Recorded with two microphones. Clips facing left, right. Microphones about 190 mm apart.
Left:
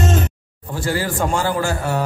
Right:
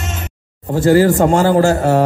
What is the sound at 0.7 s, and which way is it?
A man's voice, 45° right (ahead or behind).